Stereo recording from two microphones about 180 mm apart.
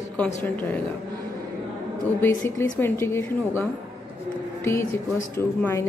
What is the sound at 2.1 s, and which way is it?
A woman's voice, 10° left (ahead or behind).